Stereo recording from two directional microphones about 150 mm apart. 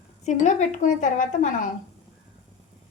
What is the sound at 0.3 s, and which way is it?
A woman's voice, 50° left (ahead or behind).